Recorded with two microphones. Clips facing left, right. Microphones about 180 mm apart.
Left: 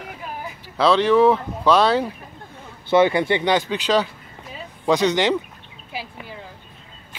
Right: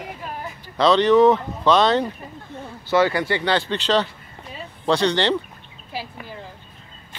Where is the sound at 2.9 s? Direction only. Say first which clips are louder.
Left 3 dB; 20° left (ahead or behind).